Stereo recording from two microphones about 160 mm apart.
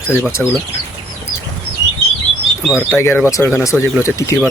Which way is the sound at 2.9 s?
15° left (ahead or behind).